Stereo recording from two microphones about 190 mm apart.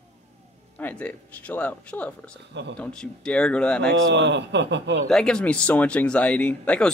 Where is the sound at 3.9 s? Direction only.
65° right (ahead or behind).